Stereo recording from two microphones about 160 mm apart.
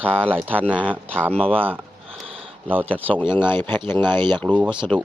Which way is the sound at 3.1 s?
10° left (ahead or behind).